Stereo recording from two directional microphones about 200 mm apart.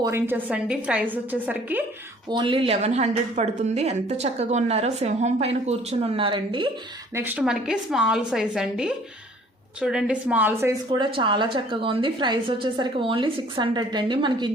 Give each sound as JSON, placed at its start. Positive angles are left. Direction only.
{"t": 0.0, "sound": "a woman's voice", "side_deg": -10}
{"t": 2.3, "sound": "speech", "side_deg": -25}
{"t": 7.1, "sound": "a woman's voice", "side_deg": -10}